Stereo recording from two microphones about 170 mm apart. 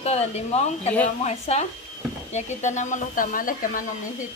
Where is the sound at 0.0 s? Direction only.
40° left (ahead or behind).